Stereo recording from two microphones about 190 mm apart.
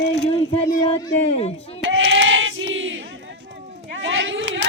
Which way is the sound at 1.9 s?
80° right.